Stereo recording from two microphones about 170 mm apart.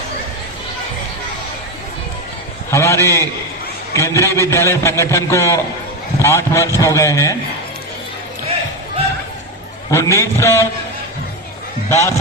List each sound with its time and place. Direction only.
2.6 s a man's voice: 15° left (ahead or behind)
9.9 s a man's voice: 15° left (ahead or behind)
11.9 s speech: 15° left (ahead or behind)